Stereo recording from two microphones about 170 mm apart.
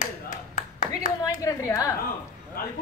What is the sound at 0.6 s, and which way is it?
Clapping, 50° left (ahead or behind).